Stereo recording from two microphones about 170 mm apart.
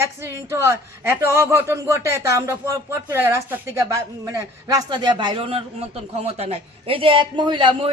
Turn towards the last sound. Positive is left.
turn(degrees=-30)  # may be behind; listen again after turning